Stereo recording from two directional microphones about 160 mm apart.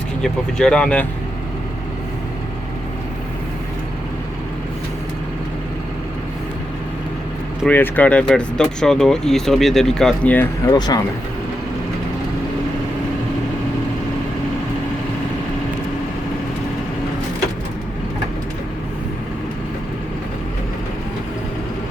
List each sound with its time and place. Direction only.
0.2 s speech: 5° left (ahead or behind)
7.7 s speech: 10° left (ahead or behind)
10.7 s speech: 25° left (ahead or behind)